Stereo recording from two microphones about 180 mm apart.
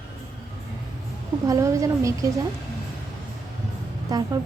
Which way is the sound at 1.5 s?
15° right (ahead or behind).